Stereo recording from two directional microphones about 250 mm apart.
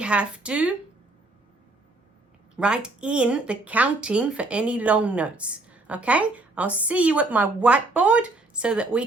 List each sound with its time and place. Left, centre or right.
0.0 s speech: centre
2.6 s speech: centre